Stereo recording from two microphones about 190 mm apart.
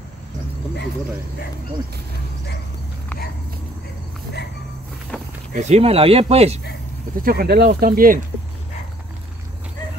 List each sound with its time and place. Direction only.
5.5 s speech: 35° right (ahead or behind)
7.2 s speech: 50° right (ahead or behind)